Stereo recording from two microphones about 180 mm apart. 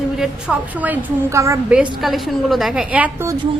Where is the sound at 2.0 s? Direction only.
Centre (ahead or behind).